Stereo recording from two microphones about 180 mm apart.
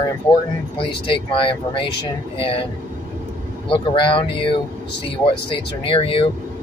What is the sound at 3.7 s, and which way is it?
Speech, 30° left (ahead or behind).